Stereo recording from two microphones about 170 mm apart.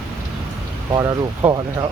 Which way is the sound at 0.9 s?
20° right (ahead or behind).